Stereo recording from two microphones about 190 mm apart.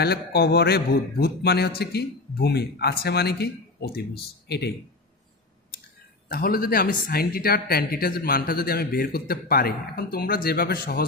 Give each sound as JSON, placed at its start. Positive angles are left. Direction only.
{"t": 0.0, "sound": "speech", "side_deg": 55}
{"t": 6.2, "sound": "speech", "side_deg": 50}